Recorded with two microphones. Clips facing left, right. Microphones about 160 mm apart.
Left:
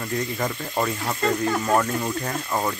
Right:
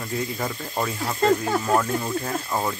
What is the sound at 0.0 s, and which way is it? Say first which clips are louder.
Speech: left 1 dB; 5° right (ahead or behind).